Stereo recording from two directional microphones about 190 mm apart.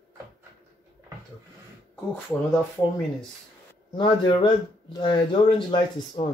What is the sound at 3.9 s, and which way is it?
Speech, 25° left (ahead or behind).